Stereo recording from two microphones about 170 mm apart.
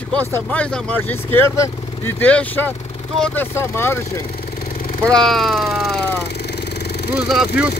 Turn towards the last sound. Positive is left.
turn(degrees=-5)  # may be behind; listen again after turning